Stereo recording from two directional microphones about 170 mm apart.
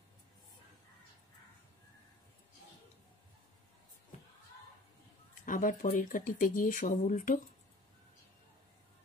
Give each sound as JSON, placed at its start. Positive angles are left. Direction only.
{"t": 5.4, "sound": "speech", "side_deg": 50}